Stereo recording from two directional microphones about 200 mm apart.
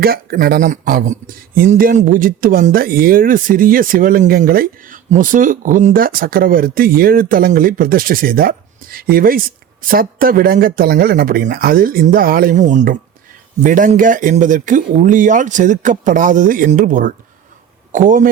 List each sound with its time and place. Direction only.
0.0 s speech: 50° right (ahead or behind)